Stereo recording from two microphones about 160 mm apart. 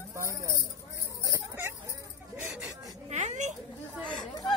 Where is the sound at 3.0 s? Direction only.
50° right (ahead or behind).